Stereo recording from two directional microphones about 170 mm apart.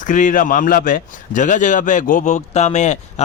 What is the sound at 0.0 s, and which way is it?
A man's voice, 50° left (ahead or behind).